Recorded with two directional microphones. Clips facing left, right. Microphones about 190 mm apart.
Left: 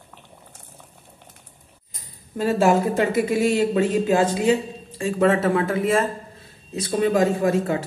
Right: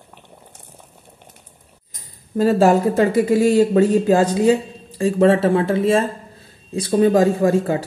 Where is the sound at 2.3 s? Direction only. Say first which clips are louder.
Right 4 dB; 35° right (ahead or behind).